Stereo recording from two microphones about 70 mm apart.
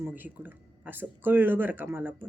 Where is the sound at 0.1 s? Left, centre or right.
Right.